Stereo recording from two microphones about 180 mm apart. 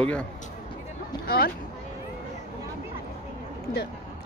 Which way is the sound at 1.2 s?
55° left (ahead or behind).